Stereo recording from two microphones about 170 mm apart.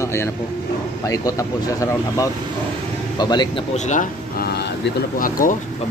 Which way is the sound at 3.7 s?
45° left (ahead or behind).